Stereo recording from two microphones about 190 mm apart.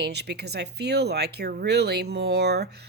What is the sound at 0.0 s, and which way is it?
Speech, 60° right (ahead or behind).